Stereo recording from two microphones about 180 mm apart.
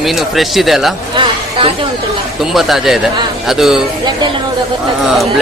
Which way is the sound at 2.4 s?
Centre (ahead or behind).